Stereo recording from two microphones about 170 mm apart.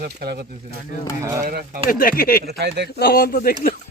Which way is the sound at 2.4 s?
70° right (ahead or behind).